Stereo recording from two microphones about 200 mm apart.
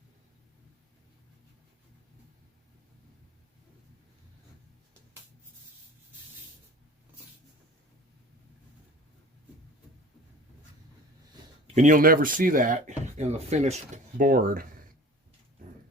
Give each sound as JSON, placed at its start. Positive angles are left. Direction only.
{"t": 11.7, "sound": "speech", "side_deg": -40}